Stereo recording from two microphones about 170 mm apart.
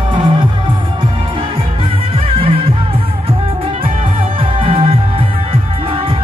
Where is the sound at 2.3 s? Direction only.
35° right (ahead or behind).